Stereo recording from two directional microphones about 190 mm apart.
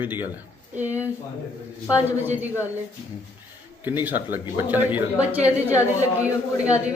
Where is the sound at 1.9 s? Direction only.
15° left (ahead or behind).